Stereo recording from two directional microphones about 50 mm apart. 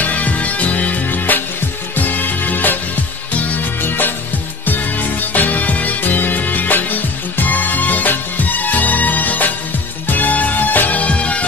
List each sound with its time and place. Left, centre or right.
0.0 s music: left
3.8 s music: left